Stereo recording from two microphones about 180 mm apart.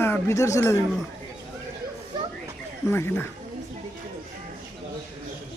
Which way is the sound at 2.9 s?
10° left (ahead or behind).